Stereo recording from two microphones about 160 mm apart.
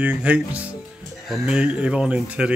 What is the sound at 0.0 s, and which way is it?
Speech, 10° right (ahead or behind).